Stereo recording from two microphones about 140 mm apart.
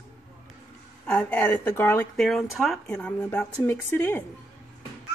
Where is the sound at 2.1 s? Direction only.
Centre (ahead or behind).